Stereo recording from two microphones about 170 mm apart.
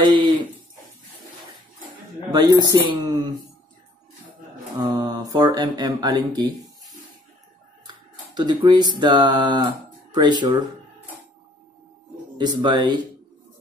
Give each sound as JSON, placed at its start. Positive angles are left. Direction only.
{"t": 0.0, "sound": "a sound", "side_deg": -25}
{"t": 2.3, "sound": "speech", "side_deg": -20}
{"t": 4.7, "sound": "speech", "side_deg": -25}
{"t": 8.4, "sound": "speech", "side_deg": -25}
{"t": 12.4, "sound": "speech", "side_deg": -25}